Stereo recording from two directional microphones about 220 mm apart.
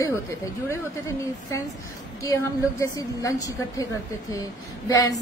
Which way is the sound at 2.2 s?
15° left (ahead or behind).